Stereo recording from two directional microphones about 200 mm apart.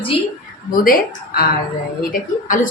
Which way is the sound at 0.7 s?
45° left (ahead or behind).